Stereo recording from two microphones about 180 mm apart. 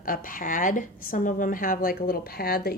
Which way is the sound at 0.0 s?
50° left (ahead or behind).